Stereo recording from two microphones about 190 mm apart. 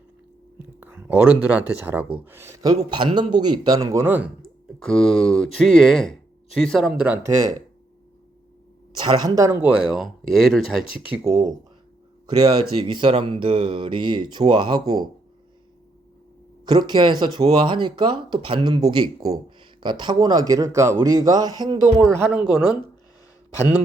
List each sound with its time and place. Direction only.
0.8 s speech: 10° right (ahead or behind)
4.8 s speech: 5° left (ahead or behind)
7.0 s speech: 10° right (ahead or behind)
9.0 s speech: 20° right (ahead or behind)
12.7 s speech: 25° right (ahead or behind)
16.6 s speech: 25° right (ahead or behind)
22.4 s speech: 25° left (ahead or behind)